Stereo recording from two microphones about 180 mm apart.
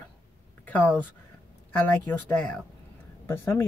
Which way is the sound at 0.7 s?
10° left (ahead or behind).